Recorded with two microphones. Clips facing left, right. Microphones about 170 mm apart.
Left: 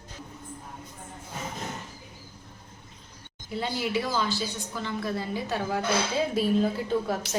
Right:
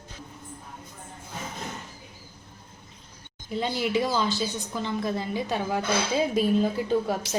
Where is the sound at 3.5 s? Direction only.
20° right (ahead or behind).